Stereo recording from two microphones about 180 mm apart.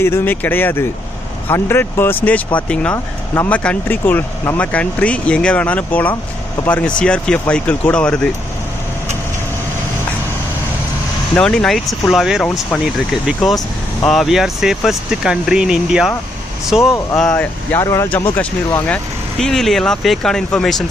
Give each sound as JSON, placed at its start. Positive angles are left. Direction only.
{"t": 0.0, "sound": "speech", "side_deg": 10}
{"t": 11.3, "sound": "speech", "side_deg": 5}